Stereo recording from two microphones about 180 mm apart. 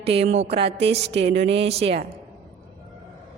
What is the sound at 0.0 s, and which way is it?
A man's voice, 35° right (ahead or behind).